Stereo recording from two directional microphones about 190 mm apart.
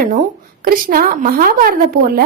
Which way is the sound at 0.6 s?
50° right (ahead or behind).